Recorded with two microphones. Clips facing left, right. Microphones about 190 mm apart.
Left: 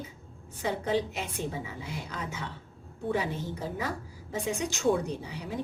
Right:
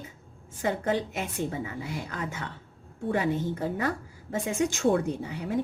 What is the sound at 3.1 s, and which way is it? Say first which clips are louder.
A woman's voice: right 6 dB; 55° right (ahead or behind).